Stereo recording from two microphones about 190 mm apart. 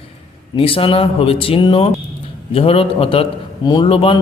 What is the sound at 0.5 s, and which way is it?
A man's voice, 30° left (ahead or behind).